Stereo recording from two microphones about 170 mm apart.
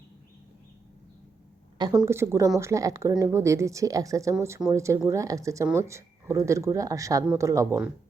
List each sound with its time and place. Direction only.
2.0 s a woman's voice: 15° right (ahead or behind)